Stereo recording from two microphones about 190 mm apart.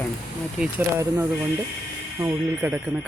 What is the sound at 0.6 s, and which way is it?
Speech, 10° right (ahead or behind).